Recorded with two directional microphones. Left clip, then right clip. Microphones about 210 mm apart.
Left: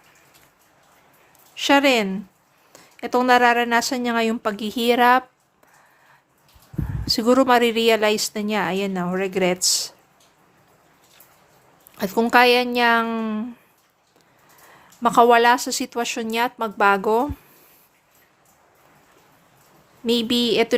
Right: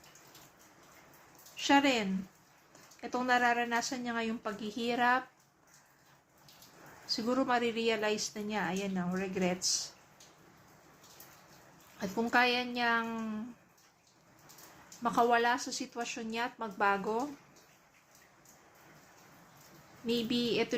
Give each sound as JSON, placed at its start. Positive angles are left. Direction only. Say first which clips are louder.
{"t": 1.5, "sound": "a woman's voice", "louder": "left 11 dB", "side_deg": 50}
{"t": 7.0, "sound": "speech", "louder": "left 15 dB", "side_deg": 55}
{"t": 11.9, "sound": "speech", "louder": "left 13 dB", "side_deg": 55}
{"t": 15.0, "sound": "speech", "louder": "left 14 dB", "side_deg": 55}
{"t": 20.1, "sound": "speech", "louder": "left 13 dB", "side_deg": 55}